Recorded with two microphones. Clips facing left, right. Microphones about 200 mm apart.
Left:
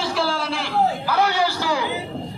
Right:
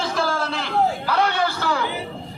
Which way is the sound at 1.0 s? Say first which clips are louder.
Left 1 dB; 5° left (ahead or behind).